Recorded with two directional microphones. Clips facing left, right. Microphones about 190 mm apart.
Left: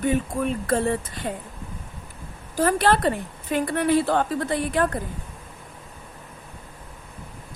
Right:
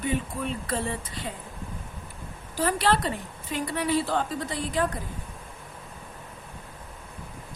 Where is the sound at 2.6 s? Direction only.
50° left (ahead or behind).